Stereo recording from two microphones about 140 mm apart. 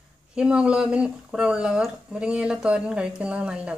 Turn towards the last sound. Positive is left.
turn(degrees=-5)  # may be behind; listen again after turning